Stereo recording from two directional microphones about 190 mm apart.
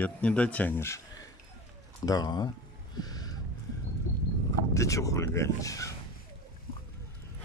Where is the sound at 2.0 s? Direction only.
20° left (ahead or behind).